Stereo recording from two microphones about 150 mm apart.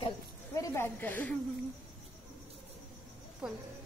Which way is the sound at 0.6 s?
15° left (ahead or behind).